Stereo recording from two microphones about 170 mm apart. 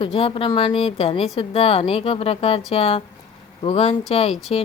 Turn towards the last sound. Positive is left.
turn(degrees=35)  # may be behind; listen again after turning